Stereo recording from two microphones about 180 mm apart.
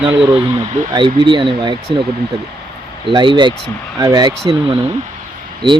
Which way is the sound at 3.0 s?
25° right (ahead or behind).